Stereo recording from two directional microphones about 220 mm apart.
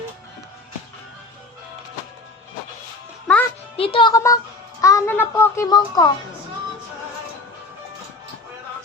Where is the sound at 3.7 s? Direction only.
25° left (ahead or behind).